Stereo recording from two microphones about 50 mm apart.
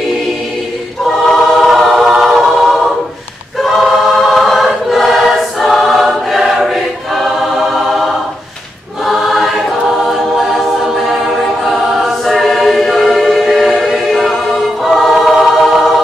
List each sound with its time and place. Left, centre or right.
1.0 s choir: centre
2.6 s a capella: centre
3.6 s choir: centre
9.0 s choir: centre